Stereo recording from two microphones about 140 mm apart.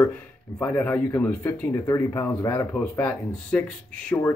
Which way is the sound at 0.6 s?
10° left (ahead or behind).